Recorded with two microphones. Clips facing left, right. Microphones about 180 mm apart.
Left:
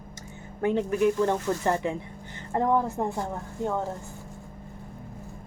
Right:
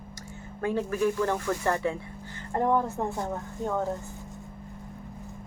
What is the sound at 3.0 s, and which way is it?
Speech, 20° left (ahead or behind).